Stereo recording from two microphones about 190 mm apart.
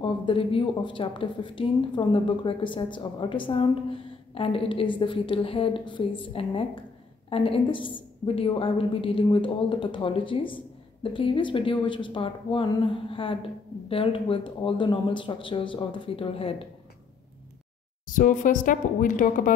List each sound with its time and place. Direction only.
0.0 s a woman's voice: 25° left (ahead or behind)
18.0 s a woman's voice: 45° left (ahead or behind)